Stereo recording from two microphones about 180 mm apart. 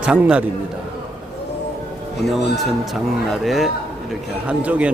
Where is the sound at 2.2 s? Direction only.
Centre (ahead or behind).